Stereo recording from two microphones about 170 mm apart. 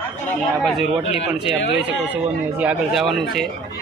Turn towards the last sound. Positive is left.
turn(degrees=0)  # may be behind; listen again after turning